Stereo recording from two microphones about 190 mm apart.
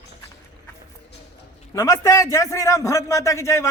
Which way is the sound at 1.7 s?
15° left (ahead or behind).